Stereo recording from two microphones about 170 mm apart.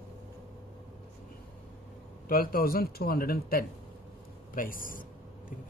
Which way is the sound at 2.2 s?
60° left (ahead or behind).